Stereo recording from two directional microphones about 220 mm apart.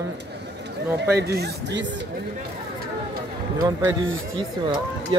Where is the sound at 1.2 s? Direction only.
45° right (ahead or behind).